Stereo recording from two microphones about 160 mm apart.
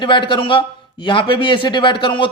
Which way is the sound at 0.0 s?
30° left (ahead or behind).